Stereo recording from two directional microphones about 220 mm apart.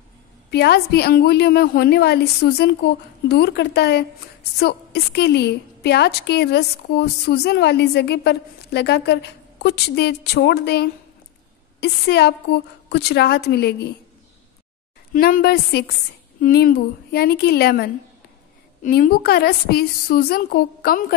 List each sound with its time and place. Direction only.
0.5 s a woman's voice: 50° left (ahead or behind)
15.1 s a woman's voice: 45° left (ahead or behind)